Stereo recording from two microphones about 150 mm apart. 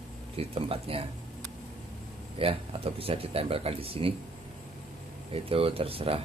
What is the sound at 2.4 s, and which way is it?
Speech, 40° right (ahead or behind).